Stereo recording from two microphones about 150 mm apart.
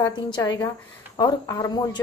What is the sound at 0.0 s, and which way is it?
Speech, 30° left (ahead or behind).